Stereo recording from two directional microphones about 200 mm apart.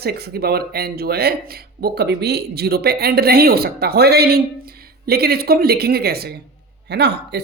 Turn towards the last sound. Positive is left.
turn(degrees=-55)  # may be behind; listen again after turning